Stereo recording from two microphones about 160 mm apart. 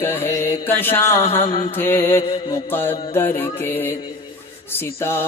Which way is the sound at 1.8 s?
15° left (ahead or behind).